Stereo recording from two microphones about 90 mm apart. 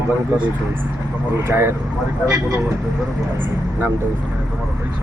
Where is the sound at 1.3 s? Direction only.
30° right (ahead or behind).